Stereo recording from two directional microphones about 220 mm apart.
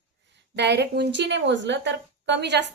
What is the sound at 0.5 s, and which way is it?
A woman's voice, 50° right (ahead or behind).